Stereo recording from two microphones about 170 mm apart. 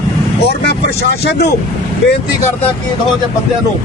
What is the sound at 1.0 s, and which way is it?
Speech, 70° left (ahead or behind).